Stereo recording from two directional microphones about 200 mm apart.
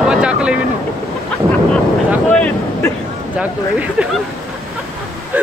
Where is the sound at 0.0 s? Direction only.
5° right (ahead or behind).